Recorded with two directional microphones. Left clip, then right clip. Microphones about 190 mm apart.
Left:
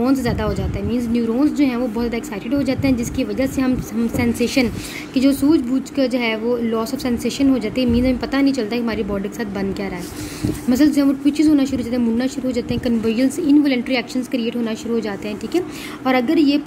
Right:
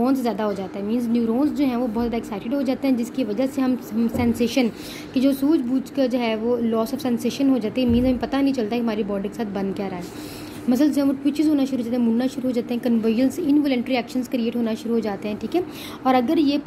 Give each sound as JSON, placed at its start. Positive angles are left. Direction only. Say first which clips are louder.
{"t": 0.0, "sound": "a woman's voice", "louder": "left 2 dB", "side_deg": -10}